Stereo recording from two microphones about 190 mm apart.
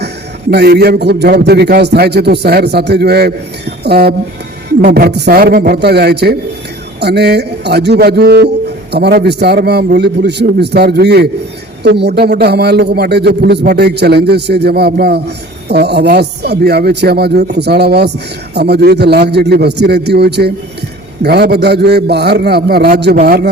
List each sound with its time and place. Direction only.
0.5 s a man's voice: 60° right (ahead or behind)